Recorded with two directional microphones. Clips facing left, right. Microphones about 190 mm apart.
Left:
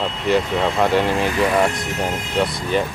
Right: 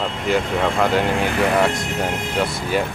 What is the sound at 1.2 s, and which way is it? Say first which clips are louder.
Speech: even; 60° right (ahead or behind).